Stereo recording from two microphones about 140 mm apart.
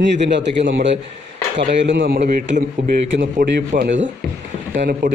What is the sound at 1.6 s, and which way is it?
A man's voice, 80° right.